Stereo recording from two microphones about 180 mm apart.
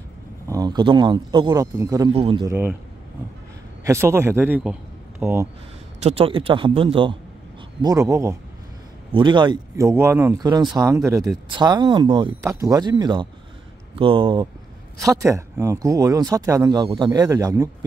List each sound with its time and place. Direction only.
0.5 s speech: 20° right (ahead or behind)
2.1 s speech: 30° right (ahead or behind)
2.4 s speech: 10° right (ahead or behind)
3.8 s speech: 15° right (ahead or behind)
6.0 s speech: 30° right (ahead or behind)
7.8 s speech: 15° right (ahead or behind)